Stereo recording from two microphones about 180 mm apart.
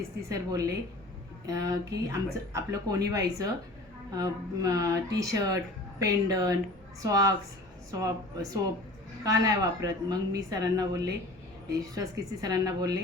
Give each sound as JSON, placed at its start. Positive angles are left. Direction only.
{"t": 0.3, "sound": "speech", "side_deg": -20}